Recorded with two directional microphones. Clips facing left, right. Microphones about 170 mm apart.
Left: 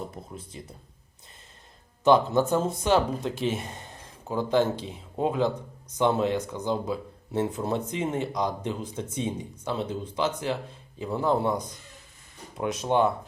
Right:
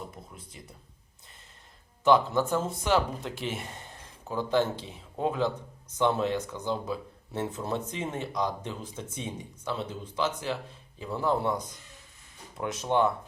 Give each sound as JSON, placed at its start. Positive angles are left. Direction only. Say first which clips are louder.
{"t": 0.3, "sound": "speech", "louder": "left 7 dB", "side_deg": 25}
{"t": 2.0, "sound": "speech", "louder": "left 3 dB", "side_deg": 20}